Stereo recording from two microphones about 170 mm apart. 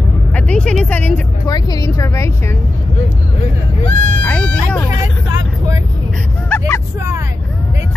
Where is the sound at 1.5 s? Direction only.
25° left (ahead or behind).